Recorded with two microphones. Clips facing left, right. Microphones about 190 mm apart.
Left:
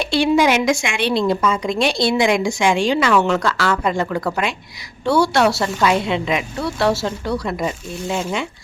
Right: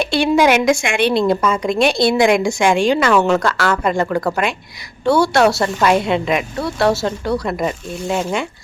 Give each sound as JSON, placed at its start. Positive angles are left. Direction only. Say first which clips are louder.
{"t": 0.0, "sound": "a woman's voice", "louder": "right 1 dB", "side_deg": -55}